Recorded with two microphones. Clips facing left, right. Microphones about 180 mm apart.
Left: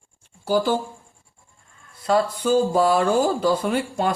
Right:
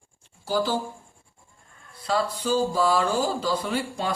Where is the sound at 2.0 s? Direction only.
55° left (ahead or behind).